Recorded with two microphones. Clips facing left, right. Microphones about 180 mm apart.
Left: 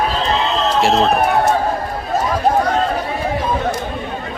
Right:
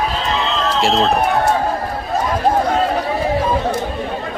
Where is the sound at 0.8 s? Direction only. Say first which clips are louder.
Left 1 dB; centre (ahead or behind).